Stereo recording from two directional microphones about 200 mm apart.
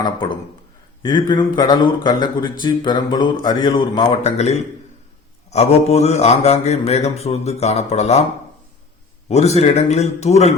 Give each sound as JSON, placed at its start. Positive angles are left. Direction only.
{"t": 0.0, "sound": "speech", "side_deg": 25}
{"t": 5.5, "sound": "mantra", "side_deg": 30}
{"t": 9.3, "sound": "mantra", "side_deg": 30}